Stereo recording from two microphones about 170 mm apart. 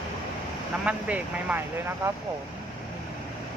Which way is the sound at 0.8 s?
10° right (ahead or behind).